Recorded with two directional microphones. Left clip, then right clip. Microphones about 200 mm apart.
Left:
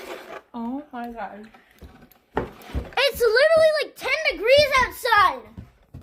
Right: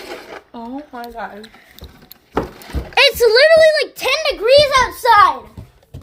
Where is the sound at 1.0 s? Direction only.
10° right (ahead or behind).